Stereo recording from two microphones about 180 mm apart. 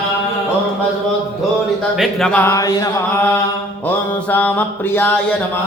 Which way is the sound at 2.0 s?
Centre (ahead or behind).